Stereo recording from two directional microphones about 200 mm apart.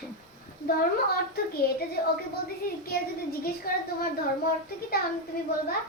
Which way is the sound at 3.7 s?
50° left (ahead or behind).